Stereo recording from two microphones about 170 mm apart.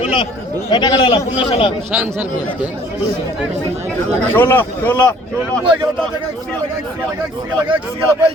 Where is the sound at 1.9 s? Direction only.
10° right (ahead or behind).